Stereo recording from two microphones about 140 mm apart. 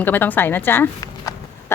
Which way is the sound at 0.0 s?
15° left (ahead or behind).